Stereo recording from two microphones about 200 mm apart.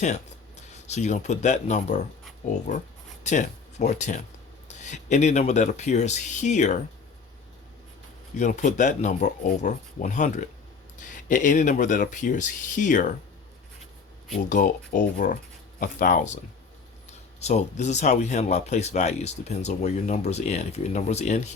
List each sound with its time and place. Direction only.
0.0 s speech: 35° left (ahead or behind)
8.4 s speech: 35° left (ahead or behind)
14.3 s speech: 40° left (ahead or behind)
17.4 s speech: 35° left (ahead or behind)